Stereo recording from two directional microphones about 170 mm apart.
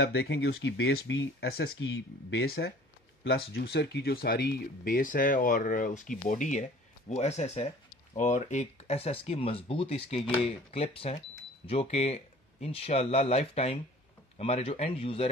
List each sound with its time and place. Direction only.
0.0 s speech: 75° left (ahead or behind)
2.3 s speech: 70° left (ahead or behind); by 15.2 s 35° left (ahead or behind)